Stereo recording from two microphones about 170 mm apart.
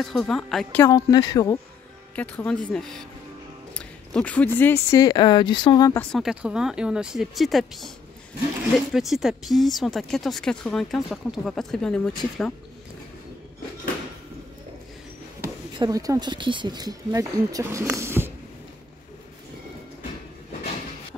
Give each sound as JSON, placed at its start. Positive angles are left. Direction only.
{"t": 0.0, "sound": "speech", "side_deg": 0}
{"t": 0.8, "sound": "speech", "side_deg": 25}
{"t": 2.1, "sound": "speech", "side_deg": 10}
{"t": 3.7, "sound": "a sound", "side_deg": 5}
{"t": 4.6, "sound": "speech", "side_deg": 10}
{"t": 5.0, "sound": "speech", "side_deg": 25}
{"t": 6.1, "sound": "speech", "side_deg": -5}
{"t": 15.8, "sound": "speech", "side_deg": -20}
{"t": 17.9, "sound": "a sound", "side_deg": -15}